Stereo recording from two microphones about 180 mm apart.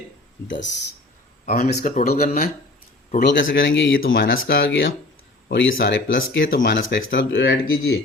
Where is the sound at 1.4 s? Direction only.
50° left (ahead or behind).